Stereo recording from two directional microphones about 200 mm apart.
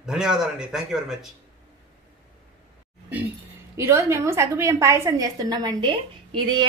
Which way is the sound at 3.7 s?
15° right (ahead or behind).